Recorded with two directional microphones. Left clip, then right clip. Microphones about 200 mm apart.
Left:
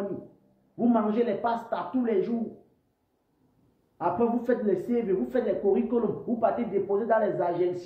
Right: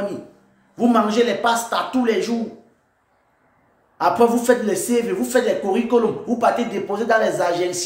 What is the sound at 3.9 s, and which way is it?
Speech, 20° right (ahead or behind).